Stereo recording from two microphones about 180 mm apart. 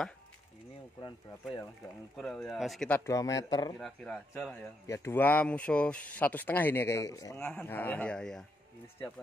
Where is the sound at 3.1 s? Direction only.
20° left (ahead or behind).